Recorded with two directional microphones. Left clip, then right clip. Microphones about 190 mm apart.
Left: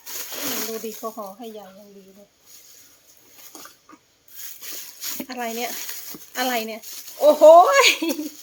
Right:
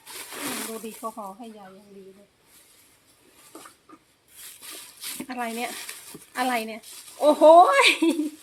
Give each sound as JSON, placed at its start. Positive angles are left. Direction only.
{"t": 0.0, "sound": "snake", "side_deg": 15}
{"t": 4.9, "sound": "a sound", "side_deg": 20}
{"t": 5.2, "sound": "speech", "side_deg": 5}